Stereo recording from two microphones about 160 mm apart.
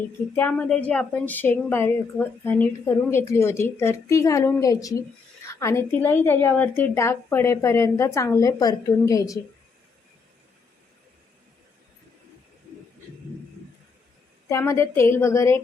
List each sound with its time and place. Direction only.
0.3 s a woman's voice: 10° left (ahead or behind)
14.4 s a woman's voice: 20° left (ahead or behind)